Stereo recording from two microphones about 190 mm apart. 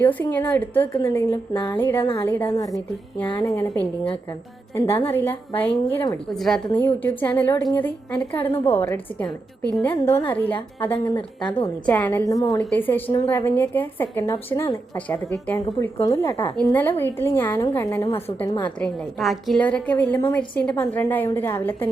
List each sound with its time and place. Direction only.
0.0 s a woman's voice: 10° left (ahead or behind)
2.0 s a woman's voice: 25° left (ahead or behind)
2.2 s a woman's voice: 10° left (ahead or behind)
11.3 s a woman's voice: 25° left (ahead or behind)
11.9 s a woman's voice: 10° left (ahead or behind)
12.3 s a woman's voice: 20° left (ahead or behind)
18.6 s a woman's voice: 5° left (ahead or behind)